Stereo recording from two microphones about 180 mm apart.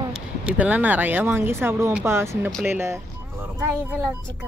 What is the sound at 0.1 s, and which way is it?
Speech, 5° right (ahead or behind).